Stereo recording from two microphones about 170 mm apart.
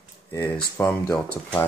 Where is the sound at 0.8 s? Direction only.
10° left (ahead or behind).